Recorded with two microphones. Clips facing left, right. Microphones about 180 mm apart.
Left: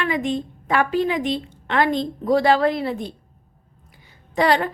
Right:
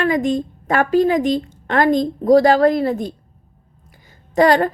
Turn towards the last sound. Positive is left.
turn(degrees=-45)  # may be behind; listen again after turning